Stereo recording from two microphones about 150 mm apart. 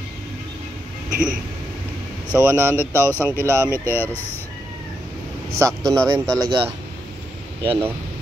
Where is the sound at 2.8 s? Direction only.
15° left (ahead or behind).